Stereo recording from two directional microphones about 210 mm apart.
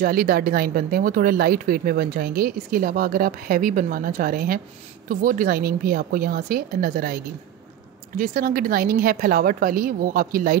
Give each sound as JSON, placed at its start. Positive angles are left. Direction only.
{"t": 0.0, "sound": "a woman's voice", "side_deg": -45}